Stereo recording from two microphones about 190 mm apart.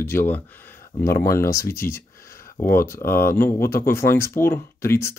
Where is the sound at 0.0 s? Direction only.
10° left (ahead or behind).